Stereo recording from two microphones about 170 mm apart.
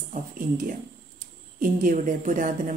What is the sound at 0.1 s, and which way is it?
A woman's voice, 50° right (ahead or behind).